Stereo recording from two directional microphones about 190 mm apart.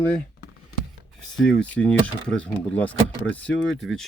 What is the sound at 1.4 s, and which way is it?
Speech, 5° left (ahead or behind).